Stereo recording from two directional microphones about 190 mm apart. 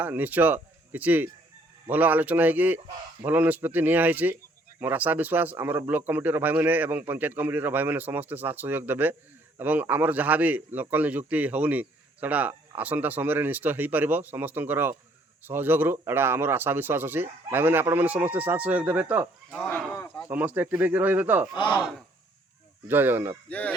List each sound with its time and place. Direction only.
0.0 s a man's voice: 10° right (ahead or behind)
19.5 s speech: 5° left (ahead or behind)
20.2 s a man's voice: 10° right (ahead or behind)
21.5 s speech: 25° left (ahead or behind)
22.9 s a man's voice: 10° right (ahead or behind)
23.5 s speech: 5° left (ahead or behind)